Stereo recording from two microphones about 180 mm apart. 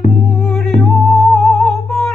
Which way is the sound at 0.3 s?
Centre (ahead or behind).